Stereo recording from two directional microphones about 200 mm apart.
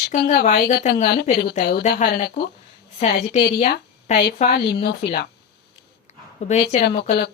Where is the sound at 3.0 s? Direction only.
35° left (ahead or behind).